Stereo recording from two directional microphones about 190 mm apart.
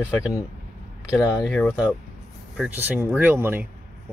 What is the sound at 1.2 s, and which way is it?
Speech, 15° left (ahead or behind).